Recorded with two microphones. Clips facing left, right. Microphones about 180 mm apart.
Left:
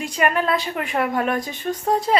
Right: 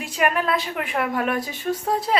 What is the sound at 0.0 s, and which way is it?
Speech, 5° right (ahead or behind).